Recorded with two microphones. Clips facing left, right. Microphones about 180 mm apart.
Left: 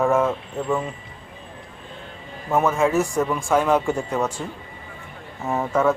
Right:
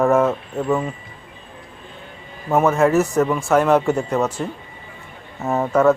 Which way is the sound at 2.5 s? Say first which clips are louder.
Right 4 dB; 10° right (ahead or behind).